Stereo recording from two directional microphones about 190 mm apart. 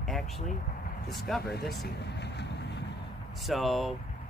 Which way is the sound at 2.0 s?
65° left (ahead or behind).